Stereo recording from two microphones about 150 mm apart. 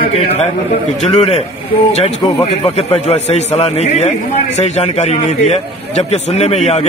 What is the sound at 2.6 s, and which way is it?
A man's voice, 45° left (ahead or behind).